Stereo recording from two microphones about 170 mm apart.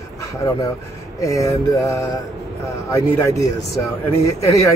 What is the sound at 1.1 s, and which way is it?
Speech, 20° left (ahead or behind).